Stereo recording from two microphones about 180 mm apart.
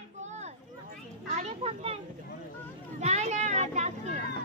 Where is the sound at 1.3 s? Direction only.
35° right (ahead or behind).